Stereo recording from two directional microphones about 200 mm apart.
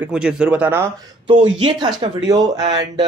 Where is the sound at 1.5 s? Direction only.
20° right (ahead or behind).